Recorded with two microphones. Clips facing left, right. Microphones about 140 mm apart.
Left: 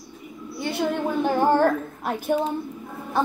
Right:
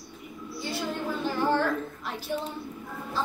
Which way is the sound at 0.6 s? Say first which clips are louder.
Left 8 dB; 60° left (ahead or behind).